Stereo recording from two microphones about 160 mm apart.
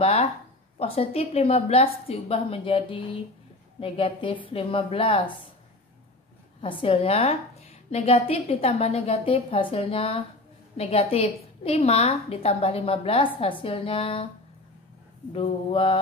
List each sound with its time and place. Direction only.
0.0 s a woman's voice: 35° left (ahead or behind)
6.6 s a woman's voice: 35° left (ahead or behind)
15.7 s a woman's voice: 35° left (ahead or behind)